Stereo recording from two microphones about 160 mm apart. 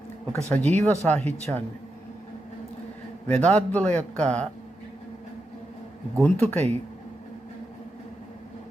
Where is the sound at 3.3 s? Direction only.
10° left (ahead or behind).